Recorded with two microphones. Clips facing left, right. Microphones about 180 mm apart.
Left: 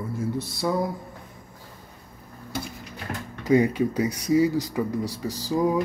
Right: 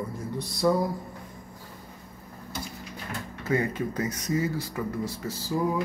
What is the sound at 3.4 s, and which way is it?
Speech, 15° left (ahead or behind).